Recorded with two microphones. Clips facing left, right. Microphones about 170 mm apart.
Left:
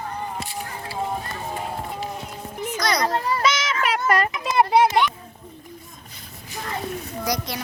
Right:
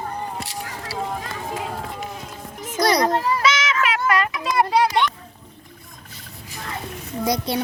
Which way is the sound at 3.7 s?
40° left (ahead or behind).